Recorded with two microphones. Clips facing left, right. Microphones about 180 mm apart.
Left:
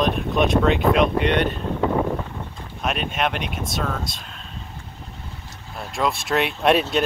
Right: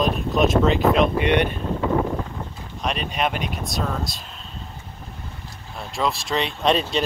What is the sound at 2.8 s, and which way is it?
Speech, 5° left (ahead or behind).